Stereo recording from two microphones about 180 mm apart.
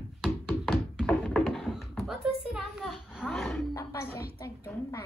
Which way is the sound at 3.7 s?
15° left (ahead or behind).